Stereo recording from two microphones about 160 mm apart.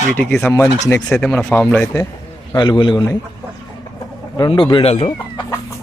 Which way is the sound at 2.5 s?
30° left (ahead or behind).